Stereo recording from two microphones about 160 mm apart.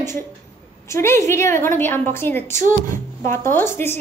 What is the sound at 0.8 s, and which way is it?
A woman's voice, 15° left (ahead or behind).